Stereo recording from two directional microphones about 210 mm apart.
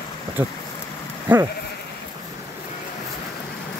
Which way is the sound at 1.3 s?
5° right (ahead or behind).